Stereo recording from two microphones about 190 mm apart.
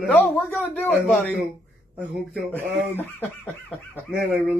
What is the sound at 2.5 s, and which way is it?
Speech, 10° left (ahead or behind).